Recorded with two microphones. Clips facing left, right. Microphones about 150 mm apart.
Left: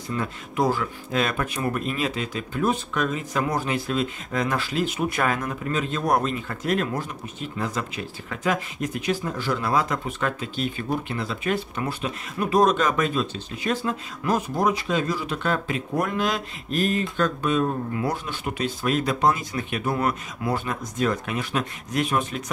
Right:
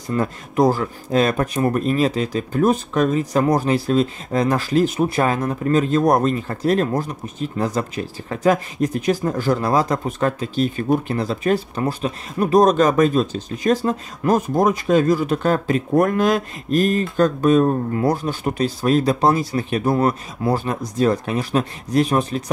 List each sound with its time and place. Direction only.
0.1 s speech: 40° right (ahead or behind)